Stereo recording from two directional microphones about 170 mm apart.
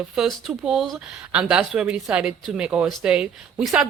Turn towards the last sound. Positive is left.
turn(degrees=-5)  # may be behind; listen again after turning